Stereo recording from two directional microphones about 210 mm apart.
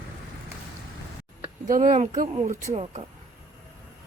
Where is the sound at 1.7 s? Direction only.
40° right (ahead or behind).